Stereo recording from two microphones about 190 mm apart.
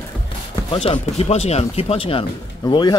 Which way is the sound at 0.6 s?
25° left (ahead or behind).